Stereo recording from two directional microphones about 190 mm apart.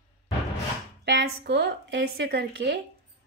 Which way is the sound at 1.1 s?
60° right (ahead or behind).